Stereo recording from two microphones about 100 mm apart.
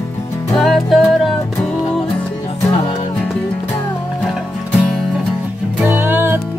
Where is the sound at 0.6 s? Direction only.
Centre (ahead or behind).